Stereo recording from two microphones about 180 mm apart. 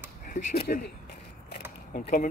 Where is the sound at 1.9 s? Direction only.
60° left (ahead or behind).